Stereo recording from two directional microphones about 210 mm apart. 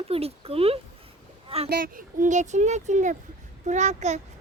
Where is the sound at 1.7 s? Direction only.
45° right (ahead or behind).